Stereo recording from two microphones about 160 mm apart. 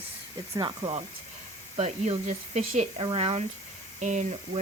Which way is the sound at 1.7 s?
45° right (ahead or behind).